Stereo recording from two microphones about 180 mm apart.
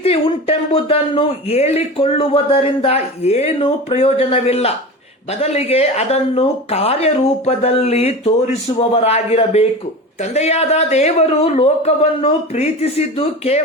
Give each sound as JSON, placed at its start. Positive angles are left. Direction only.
{"t": 0.0, "sound": "speech", "side_deg": 35}